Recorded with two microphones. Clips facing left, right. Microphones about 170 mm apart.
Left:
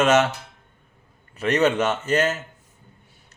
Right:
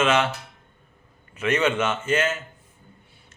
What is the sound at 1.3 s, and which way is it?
A man's voice, 35° left (ahead or behind).